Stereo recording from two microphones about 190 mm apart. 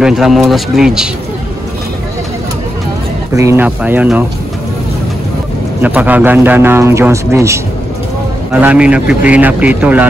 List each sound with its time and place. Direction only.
0.0 s speech: centre (ahead or behind)
3.3 s a man's voice: 15° right (ahead or behind)
5.8 s a man's voice: 10° right (ahead or behind)